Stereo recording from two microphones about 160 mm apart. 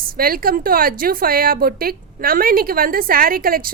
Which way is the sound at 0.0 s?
65° right (ahead or behind).